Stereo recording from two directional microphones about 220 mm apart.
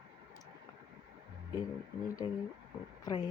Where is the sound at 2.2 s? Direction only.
20° left (ahead or behind).